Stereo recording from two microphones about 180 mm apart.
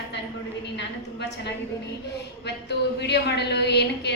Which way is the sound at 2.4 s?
70° left (ahead or behind).